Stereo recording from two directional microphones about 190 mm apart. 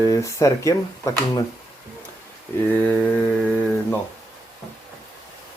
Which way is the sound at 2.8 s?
10° left (ahead or behind).